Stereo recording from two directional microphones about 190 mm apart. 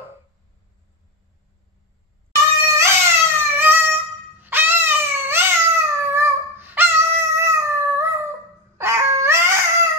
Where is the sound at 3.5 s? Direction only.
10° right (ahead or behind).